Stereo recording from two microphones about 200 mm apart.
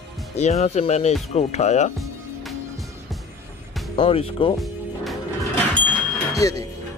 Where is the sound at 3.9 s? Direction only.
30° left (ahead or behind).